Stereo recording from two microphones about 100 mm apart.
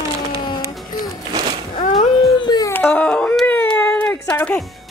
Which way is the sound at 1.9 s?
45° left (ahead or behind).